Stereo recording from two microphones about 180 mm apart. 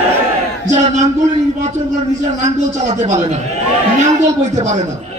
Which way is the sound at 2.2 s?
40° right (ahead or behind).